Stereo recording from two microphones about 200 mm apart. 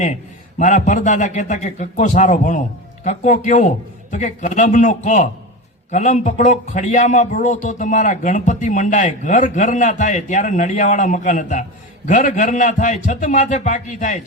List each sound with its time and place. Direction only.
0.6 s a man's voice: 35° left (ahead or behind)